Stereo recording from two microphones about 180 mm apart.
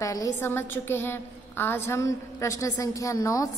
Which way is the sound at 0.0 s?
20° left (ahead or behind).